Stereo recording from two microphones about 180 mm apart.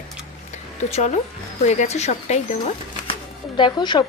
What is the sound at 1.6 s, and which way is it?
Speech, 40° left (ahead or behind).